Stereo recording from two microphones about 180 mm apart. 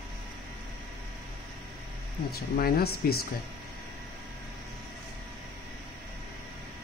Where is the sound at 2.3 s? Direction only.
55° left (ahead or behind).